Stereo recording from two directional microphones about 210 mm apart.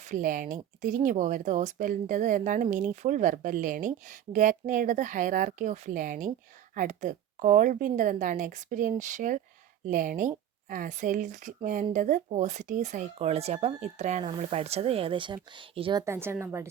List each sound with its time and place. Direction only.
0.0 s a woman's voice: 35° right (ahead or behind); by 16.6 s 10° right (ahead or behind)